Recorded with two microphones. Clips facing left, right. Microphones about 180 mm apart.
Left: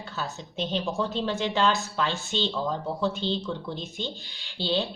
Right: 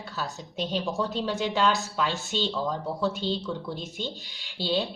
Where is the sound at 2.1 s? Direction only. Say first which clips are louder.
Even; 40° right (ahead or behind).